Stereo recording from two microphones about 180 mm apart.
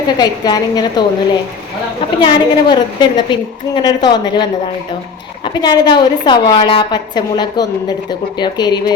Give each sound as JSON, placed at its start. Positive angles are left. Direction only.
{"t": 0.2, "sound": "a woman's voice", "side_deg": 20}
{"t": 2.2, "sound": "a woman's voice", "side_deg": 25}
{"t": 5.5, "sound": "a woman's voice", "side_deg": 25}